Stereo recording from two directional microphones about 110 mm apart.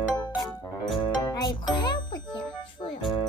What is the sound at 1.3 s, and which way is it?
Music, 35° left (ahead or behind).